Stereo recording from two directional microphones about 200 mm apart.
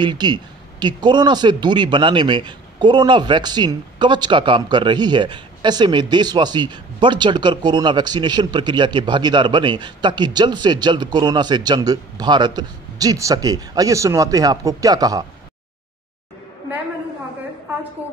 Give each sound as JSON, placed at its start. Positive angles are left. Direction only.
{"t": 0.0, "sound": "speech", "side_deg": -20}